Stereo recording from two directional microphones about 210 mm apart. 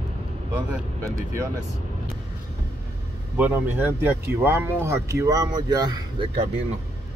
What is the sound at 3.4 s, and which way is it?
Speech, 10° right (ahead or behind).